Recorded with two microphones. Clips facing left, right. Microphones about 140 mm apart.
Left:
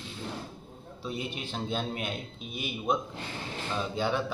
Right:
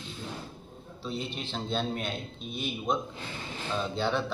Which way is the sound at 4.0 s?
10° left (ahead or behind).